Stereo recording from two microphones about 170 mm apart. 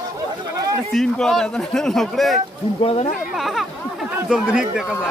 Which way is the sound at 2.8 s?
35° left (ahead or behind).